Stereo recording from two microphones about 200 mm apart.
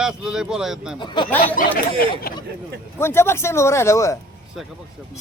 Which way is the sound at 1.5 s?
45° left (ahead or behind).